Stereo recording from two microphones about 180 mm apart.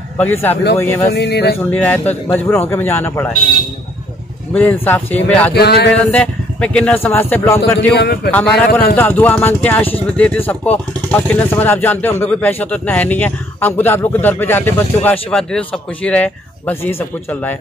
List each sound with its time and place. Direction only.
0.2 s speech: 10° left (ahead or behind)
1.1 s speech: 70° left (ahead or behind)
1.7 s speech: 10° left (ahead or behind)
4.8 s speech: 10° left (ahead or behind)
5.5 s speech: 60° left (ahead or behind)
6.1 s speech: 5° left (ahead or behind)
7.9 s speech: 65° left (ahead or behind)
8.3 s speech: 5° left (ahead or behind)